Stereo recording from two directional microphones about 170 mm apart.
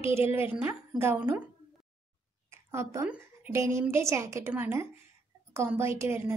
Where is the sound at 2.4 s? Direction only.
15° right (ahead or behind).